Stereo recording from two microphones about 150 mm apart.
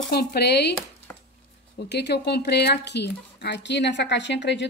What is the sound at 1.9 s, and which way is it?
Speech, 90° left.